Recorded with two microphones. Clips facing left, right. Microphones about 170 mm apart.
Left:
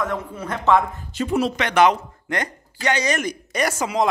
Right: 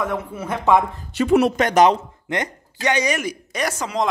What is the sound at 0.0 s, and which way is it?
Speech, 10° right (ahead or behind).